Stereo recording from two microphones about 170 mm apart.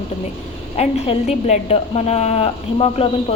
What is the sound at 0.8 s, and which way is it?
A woman's voice, 40° left (ahead or behind).